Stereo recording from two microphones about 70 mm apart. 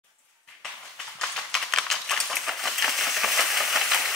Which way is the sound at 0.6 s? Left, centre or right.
Centre.